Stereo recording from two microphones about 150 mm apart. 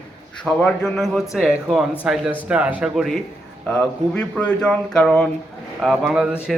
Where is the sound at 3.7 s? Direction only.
10° left (ahead or behind).